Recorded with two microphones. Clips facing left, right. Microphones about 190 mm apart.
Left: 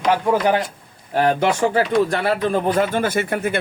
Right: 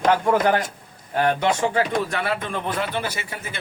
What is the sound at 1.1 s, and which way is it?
Speech, 30° left (ahead or behind).